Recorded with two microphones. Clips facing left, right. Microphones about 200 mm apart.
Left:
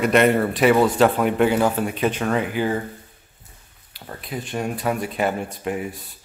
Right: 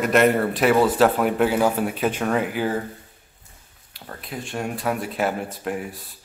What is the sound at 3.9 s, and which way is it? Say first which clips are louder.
Speech: left 3 dB; centre (ahead or behind).